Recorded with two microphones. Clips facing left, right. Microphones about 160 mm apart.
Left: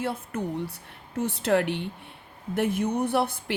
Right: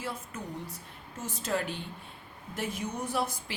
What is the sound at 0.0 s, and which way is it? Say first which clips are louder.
Speech: left 8 dB; 60° left (ahead or behind).